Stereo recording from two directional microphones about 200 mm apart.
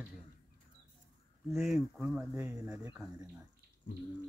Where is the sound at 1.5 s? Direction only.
Centre (ahead or behind).